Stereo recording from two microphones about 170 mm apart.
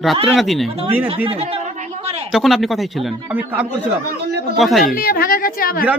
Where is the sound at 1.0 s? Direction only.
35° right (ahead or behind).